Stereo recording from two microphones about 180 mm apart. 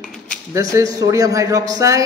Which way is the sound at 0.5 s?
15° right (ahead or behind).